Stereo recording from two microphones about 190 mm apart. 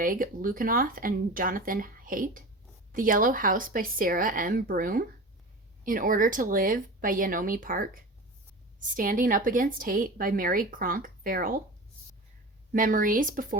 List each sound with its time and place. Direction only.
0.0 s a woman's voice: 50° right (ahead or behind)
12.7 s a woman's voice: 45° right (ahead or behind)